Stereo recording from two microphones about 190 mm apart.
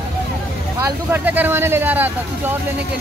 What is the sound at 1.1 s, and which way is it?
Speech, 10° right (ahead or behind).